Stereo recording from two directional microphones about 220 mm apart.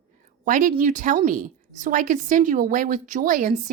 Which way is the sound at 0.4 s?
35° right (ahead or behind).